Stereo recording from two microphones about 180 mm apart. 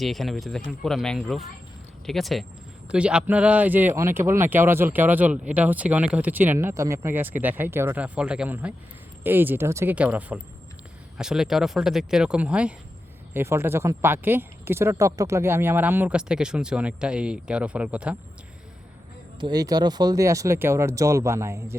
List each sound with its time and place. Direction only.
0.0 s speech: centre (ahead or behind)
19.4 s speech: 20° right (ahead or behind)